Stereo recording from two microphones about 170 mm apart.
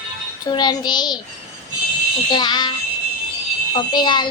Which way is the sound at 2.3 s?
25° left (ahead or behind).